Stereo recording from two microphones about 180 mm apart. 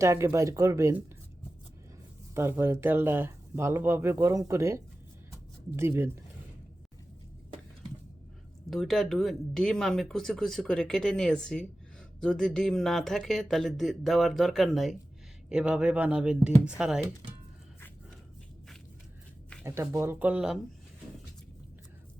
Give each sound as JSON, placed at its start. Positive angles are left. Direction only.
{"t": 0.0, "sound": "speech", "side_deg": -15}
{"t": 2.3, "sound": "speech", "side_deg": -15}
{"t": 8.7, "sound": "speech", "side_deg": 0}
{"t": 19.6, "sound": "speech", "side_deg": -15}